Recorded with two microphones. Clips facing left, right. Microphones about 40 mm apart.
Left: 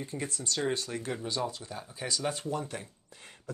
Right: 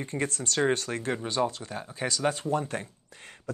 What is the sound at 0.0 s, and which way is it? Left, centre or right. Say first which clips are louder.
Speech: right 5 dB; right.